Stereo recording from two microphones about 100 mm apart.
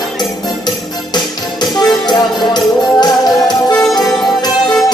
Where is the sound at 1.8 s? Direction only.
45° left (ahead or behind).